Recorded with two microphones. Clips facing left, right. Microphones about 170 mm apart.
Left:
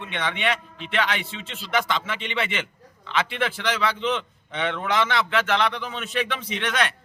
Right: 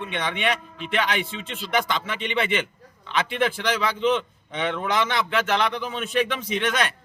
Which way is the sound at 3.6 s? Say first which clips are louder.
Even; 10° right (ahead or behind).